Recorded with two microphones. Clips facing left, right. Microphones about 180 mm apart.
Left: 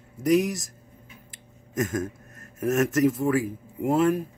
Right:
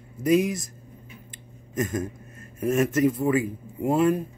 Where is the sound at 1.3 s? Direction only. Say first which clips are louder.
Even; 90° left.